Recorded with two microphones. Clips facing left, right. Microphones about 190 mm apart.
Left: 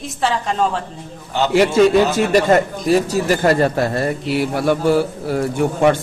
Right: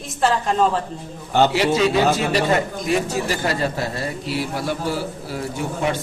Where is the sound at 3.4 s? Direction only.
55° left (ahead or behind).